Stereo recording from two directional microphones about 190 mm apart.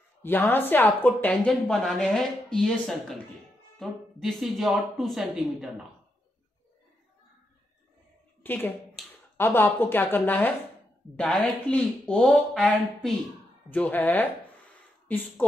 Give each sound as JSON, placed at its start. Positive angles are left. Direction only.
{"t": 0.2, "sound": "speech", "side_deg": 10}
{"t": 8.4, "sound": "a sound", "side_deg": 10}
{"t": 9.4, "sound": "speech", "side_deg": 10}